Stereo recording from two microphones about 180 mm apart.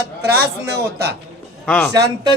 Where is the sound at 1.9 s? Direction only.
20° right (ahead or behind).